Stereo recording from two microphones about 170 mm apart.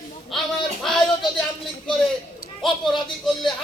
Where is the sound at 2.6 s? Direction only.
Centre (ahead or behind).